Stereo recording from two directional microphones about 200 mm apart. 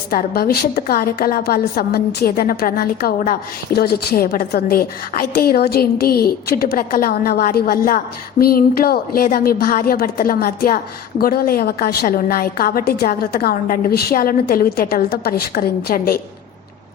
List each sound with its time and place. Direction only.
0.1 s a woman's voice: 45° left (ahead or behind)